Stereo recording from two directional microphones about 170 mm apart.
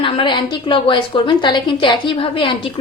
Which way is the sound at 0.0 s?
30° left (ahead or behind).